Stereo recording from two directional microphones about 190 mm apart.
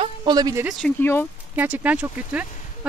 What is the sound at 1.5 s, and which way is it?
Speech, 10° right (ahead or behind).